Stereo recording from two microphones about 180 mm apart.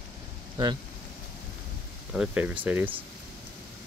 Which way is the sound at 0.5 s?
25° right (ahead or behind).